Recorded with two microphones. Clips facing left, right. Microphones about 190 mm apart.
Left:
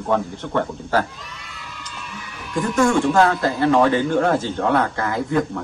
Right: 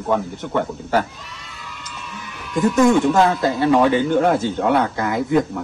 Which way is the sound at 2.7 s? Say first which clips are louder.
Right 2 dB; 20° right (ahead or behind).